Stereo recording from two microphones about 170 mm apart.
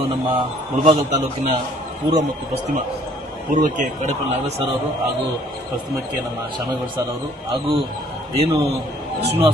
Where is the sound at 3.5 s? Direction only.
50° right (ahead or behind).